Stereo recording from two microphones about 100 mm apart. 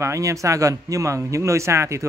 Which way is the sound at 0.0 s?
30° right (ahead or behind).